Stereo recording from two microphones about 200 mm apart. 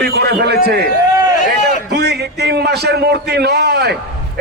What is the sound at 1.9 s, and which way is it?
A man's voice, 55° right (ahead or behind).